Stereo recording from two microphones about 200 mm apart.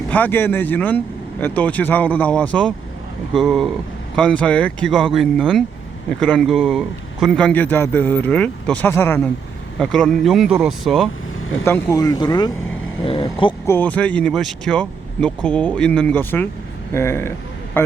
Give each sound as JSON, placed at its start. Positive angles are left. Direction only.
{"t": 0.1, "sound": "speech", "side_deg": 10}
{"t": 11.6, "sound": "speech", "side_deg": 15}
{"t": 17.7, "sound": "a sound", "side_deg": 10}